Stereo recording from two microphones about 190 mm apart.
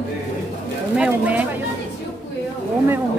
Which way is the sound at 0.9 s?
5° right (ahead or behind).